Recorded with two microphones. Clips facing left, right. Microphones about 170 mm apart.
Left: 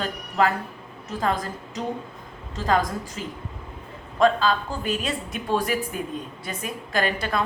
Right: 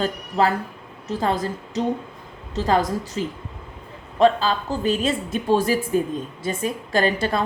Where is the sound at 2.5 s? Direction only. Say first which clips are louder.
Right 3 dB; 40° right (ahead or behind).